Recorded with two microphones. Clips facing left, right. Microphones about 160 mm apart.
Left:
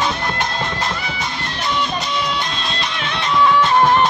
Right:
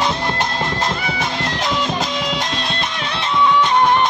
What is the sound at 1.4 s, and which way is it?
Music, 90° right.